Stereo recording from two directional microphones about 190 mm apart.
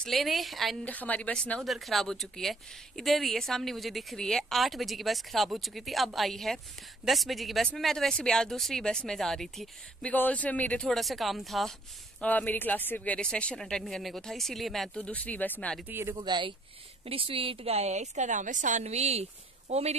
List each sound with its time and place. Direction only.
0.0 s speech: centre (ahead or behind)
15.9 s speech: 10° right (ahead or behind)
16.2 s a woman's voice: 25° right (ahead or behind)